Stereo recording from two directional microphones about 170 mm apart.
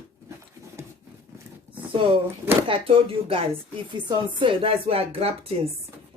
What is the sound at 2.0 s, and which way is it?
A woman's voice, 30° right (ahead or behind).